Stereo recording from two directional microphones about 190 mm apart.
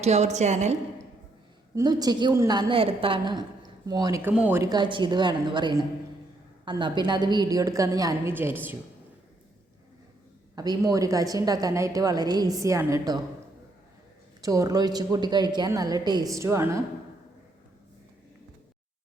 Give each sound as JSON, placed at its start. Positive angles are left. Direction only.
{"t": 0.0, "sound": "a woman's voice", "side_deg": -35}
{"t": 1.7, "sound": "a woman's voice", "side_deg": -20}
{"t": 10.5, "sound": "a woman's voice", "side_deg": -20}
{"t": 14.4, "sound": "a woman's voice", "side_deg": -15}